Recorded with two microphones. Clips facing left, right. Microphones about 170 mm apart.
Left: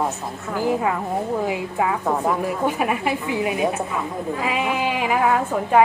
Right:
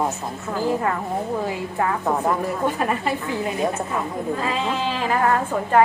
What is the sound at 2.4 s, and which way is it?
A woman's voice, 10° left (ahead or behind).